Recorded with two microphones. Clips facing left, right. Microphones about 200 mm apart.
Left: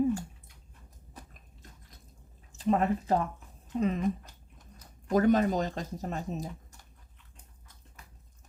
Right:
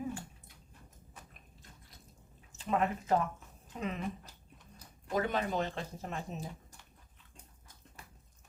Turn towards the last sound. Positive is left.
turn(degrees=40)  # may be behind; listen again after turning